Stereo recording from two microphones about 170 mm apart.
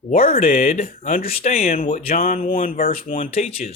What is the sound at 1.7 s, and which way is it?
Speech, 50° left (ahead or behind).